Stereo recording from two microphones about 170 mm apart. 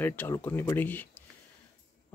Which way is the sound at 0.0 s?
10° left (ahead or behind).